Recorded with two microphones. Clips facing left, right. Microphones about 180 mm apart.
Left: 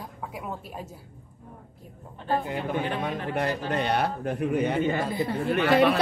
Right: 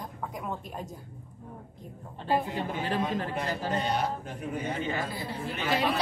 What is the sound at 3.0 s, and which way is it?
A man's voice, 65° left (ahead or behind).